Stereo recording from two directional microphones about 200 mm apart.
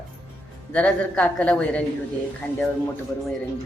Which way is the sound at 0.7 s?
5° left (ahead or behind).